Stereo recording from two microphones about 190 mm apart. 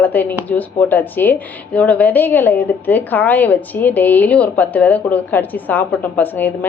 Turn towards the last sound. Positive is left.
turn(degrees=10)  # may be behind; listen again after turning